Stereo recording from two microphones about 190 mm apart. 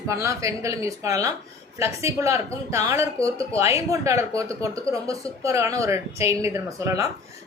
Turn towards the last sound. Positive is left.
turn(degrees=-15)  # may be behind; listen again after turning